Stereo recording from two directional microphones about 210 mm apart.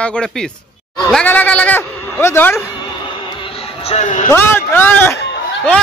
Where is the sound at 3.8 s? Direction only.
35° left (ahead or behind).